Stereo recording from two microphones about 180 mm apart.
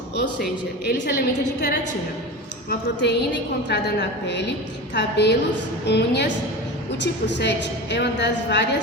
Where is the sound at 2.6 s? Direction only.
70° left (ahead or behind).